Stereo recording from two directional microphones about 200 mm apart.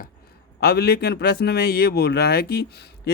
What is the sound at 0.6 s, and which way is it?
A man's voice, 50° left (ahead or behind).